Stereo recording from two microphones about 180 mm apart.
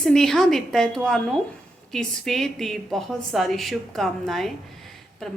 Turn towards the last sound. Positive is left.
turn(degrees=0)  # may be behind; listen again after turning